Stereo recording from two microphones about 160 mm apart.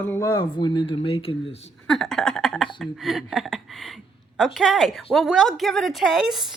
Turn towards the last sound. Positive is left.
turn(degrees=0)  # may be behind; listen again after turning